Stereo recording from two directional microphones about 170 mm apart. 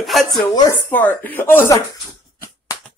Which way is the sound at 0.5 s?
25° left (ahead or behind).